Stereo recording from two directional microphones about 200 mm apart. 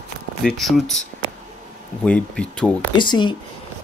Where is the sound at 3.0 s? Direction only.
25° left (ahead or behind).